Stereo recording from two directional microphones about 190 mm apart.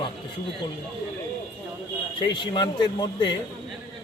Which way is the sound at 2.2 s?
25° left (ahead or behind).